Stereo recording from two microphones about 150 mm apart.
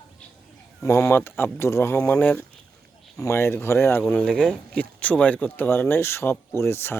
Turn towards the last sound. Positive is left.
turn(degrees=15)  # may be behind; listen again after turning